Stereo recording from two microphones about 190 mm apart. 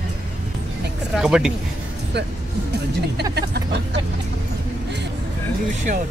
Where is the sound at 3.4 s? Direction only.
60° right (ahead or behind).